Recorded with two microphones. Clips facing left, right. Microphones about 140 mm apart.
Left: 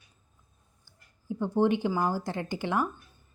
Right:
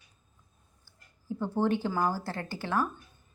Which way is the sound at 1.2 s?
15° left (ahead or behind).